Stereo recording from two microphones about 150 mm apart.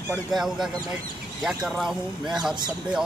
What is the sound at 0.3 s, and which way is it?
Speech, centre (ahead or behind).